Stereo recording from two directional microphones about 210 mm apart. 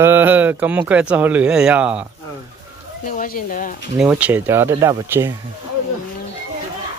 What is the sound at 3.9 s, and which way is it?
Speech, 5° right (ahead or behind).